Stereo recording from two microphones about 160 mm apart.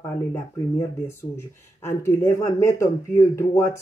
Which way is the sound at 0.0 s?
20° left (ahead or behind).